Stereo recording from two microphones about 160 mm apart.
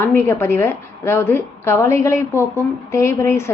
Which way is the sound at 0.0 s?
15° left (ahead or behind).